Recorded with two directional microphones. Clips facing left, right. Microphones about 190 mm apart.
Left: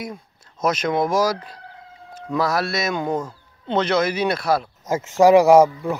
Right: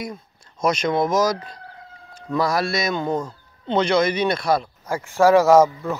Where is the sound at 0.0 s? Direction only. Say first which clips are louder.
Right 1 dB; 5° left (ahead or behind).